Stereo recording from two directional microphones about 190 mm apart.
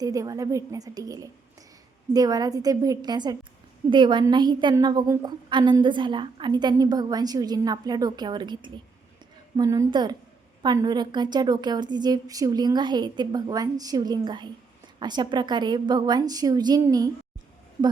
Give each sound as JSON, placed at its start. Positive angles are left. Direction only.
{"t": 0.0, "sound": "a woman's voice", "side_deg": -20}